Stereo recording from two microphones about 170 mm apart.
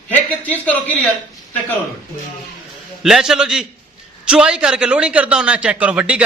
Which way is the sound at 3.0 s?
Centre (ahead or behind).